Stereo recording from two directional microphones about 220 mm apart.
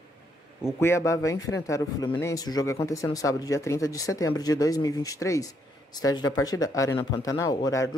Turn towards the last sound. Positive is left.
turn(degrees=15)  # may be behind; listen again after turning